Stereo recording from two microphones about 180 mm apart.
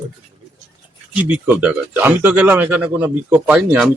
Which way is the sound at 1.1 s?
10° right (ahead or behind).